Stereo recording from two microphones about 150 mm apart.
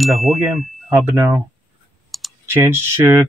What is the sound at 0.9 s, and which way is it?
Speech, 15° right (ahead or behind).